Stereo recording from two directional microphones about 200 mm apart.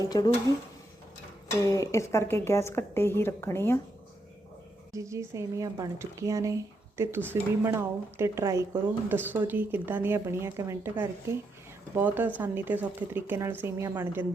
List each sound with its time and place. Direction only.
0.0 s speech: 20° left (ahead or behind)
1.6 s a woman's voice: 15° left (ahead or behind)
4.9 s speech: 15° right (ahead or behind)